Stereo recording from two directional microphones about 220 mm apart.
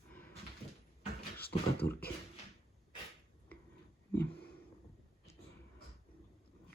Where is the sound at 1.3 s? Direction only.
45° left (ahead or behind).